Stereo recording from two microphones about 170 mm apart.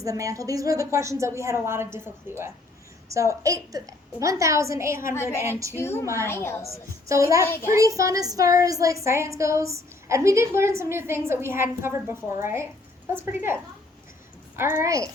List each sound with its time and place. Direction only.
0.0 s a woman's voice: 20° right (ahead or behind)
5.1 s a woman's voice: 15° left (ahead or behind)
6.7 s a woman's voice: 20° right (ahead or behind)
7.4 s a woman's voice: 15° left (ahead or behind)
7.7 s a woman's voice: 20° right (ahead or behind)
14.5 s a woman's voice: 15° right (ahead or behind)